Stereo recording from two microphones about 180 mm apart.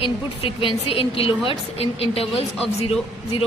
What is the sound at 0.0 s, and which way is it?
A woman's voice, 30° left (ahead or behind).